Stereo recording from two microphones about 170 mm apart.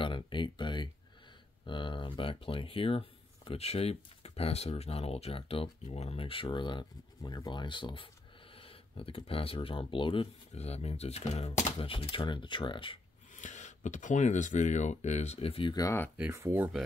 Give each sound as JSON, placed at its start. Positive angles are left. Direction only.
{"t": 0.0, "sound": "a sound", "side_deg": 30}
{"t": 1.7, "sound": "speech", "side_deg": 30}
{"t": 13.3, "sound": "speech", "side_deg": 45}
{"t": 15.7, "sound": "speech", "side_deg": 20}
{"t": 16.3, "sound": "speech", "side_deg": -15}